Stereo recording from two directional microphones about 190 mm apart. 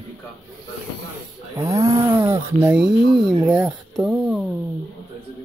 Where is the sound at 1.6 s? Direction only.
15° right (ahead or behind).